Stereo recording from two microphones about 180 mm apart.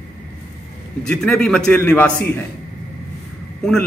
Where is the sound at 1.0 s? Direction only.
5° left (ahead or behind).